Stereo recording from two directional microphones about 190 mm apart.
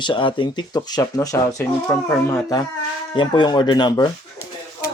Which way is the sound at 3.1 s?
25° left (ahead or behind).